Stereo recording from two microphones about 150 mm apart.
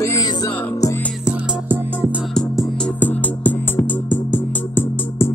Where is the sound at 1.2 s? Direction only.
10° right (ahead or behind).